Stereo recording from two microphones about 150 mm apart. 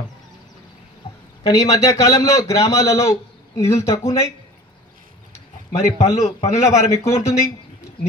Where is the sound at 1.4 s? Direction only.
25° left (ahead or behind).